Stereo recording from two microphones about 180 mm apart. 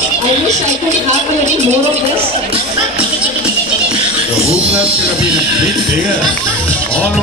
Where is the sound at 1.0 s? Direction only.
40° right (ahead or behind).